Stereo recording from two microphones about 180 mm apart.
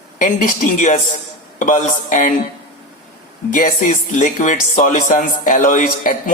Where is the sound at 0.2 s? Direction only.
50° left (ahead or behind).